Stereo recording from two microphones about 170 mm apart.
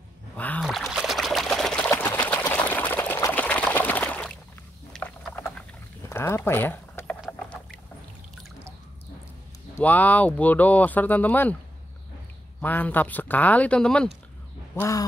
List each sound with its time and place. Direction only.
0.4 s a sound: 10° left (ahead or behind)
0.7 s pour: centre (ahead or behind)
4.9 s a sound: 10° left (ahead or behind)
6.0 s mechanisms: 15° left (ahead or behind)
7.2 s rowboat: 5° left (ahead or behind)
9.8 s speech: 10° left (ahead or behind)
12.6 s speech: 10° left (ahead or behind)
14.8 s speech: 20° left (ahead or behind)